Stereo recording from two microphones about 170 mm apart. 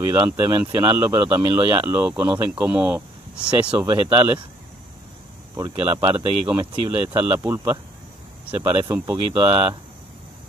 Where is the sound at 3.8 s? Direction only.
25° right (ahead or behind).